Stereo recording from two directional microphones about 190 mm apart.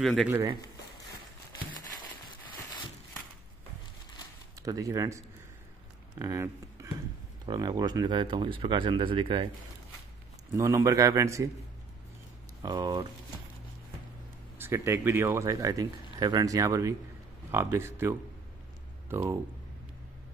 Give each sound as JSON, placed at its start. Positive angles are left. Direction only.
{"t": 0.2, "sound": "speech", "side_deg": -10}
{"t": 4.6, "sound": "speech", "side_deg": -15}
{"t": 10.5, "sound": "speech", "side_deg": -15}
{"t": 12.6, "sound": "speech", "side_deg": -20}
{"t": 14.6, "sound": "speech", "side_deg": -15}